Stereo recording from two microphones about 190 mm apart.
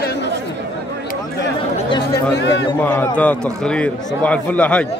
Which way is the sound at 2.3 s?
70° left (ahead or behind).